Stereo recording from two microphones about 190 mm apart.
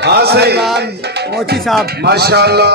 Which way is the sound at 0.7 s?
60° right (ahead or behind).